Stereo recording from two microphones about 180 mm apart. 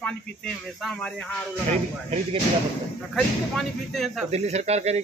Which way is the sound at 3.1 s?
Centre (ahead or behind).